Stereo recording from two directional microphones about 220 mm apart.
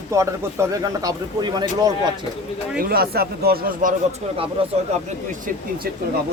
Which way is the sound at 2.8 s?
45° right (ahead or behind).